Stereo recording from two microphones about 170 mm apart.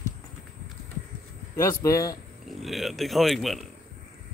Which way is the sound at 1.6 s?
15° left (ahead or behind).